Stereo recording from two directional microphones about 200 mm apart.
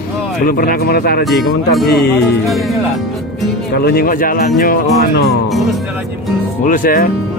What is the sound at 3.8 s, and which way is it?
Speech, 50° left (ahead or behind).